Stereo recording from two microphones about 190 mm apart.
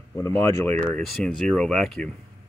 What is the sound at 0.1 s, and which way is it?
Speech, 15° left (ahead or behind).